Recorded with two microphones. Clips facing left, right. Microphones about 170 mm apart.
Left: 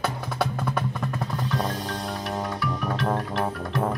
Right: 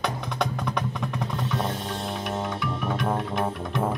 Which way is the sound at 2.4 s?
Centre (ahead or behind).